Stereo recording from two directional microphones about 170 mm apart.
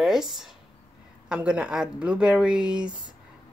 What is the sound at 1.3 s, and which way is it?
Speech, 5° right (ahead or behind).